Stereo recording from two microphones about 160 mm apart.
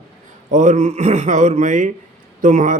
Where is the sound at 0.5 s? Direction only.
50° right (ahead or behind).